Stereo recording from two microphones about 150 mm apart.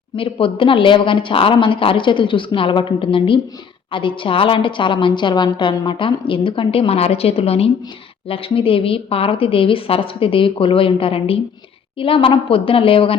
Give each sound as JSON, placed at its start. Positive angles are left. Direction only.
{"t": 0.2, "sound": "a woman's voice", "side_deg": 35}